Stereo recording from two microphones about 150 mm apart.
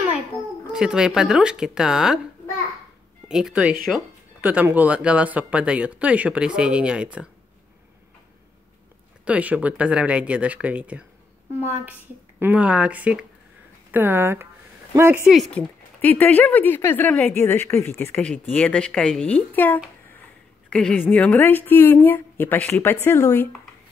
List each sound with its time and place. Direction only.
0.7 s speech: 5° right (ahead or behind)
3.3 s speech: 5° right (ahead or behind)
9.2 s speech: 10° right (ahead or behind)
12.4 s speech: 10° right (ahead or behind)
15.2 s speech: centre (ahead or behind)
16.0 s speech: 10° left (ahead or behind)